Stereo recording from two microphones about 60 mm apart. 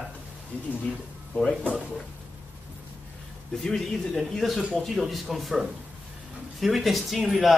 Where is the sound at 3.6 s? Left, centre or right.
Centre.